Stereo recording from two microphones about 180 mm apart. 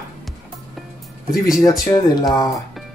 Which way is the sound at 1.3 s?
Centre (ahead or behind).